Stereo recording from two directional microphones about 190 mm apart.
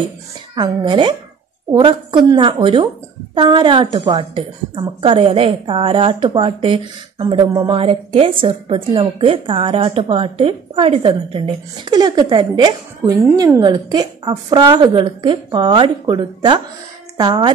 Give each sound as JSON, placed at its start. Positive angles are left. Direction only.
{"t": 0.6, "sound": "a woman's voice", "side_deg": -25}